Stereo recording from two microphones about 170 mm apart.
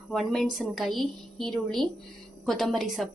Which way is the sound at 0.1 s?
Centre (ahead or behind).